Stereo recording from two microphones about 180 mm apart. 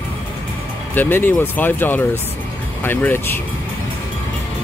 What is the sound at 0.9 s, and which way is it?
Speech, 10° left (ahead or behind).